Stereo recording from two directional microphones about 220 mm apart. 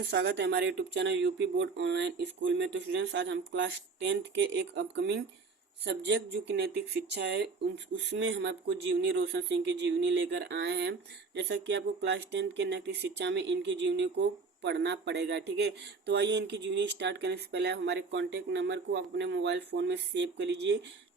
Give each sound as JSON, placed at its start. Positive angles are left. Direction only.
{"t": 0.0, "sound": "speech", "side_deg": -50}
{"t": 6.6, "sound": "speech", "side_deg": -50}